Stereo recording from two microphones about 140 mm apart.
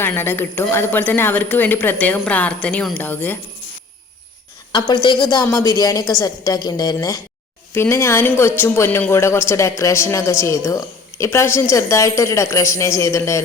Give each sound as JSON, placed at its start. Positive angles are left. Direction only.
{"t": 0.0, "sound": "speech", "side_deg": 15}
{"t": 5.3, "sound": "a woman's voice", "side_deg": 25}